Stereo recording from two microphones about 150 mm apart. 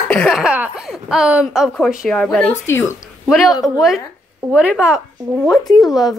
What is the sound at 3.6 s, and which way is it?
Speech, centre (ahead or behind).